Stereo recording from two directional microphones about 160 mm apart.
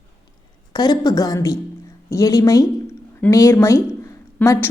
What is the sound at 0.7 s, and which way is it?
A woman's voice, 25° left (ahead or behind).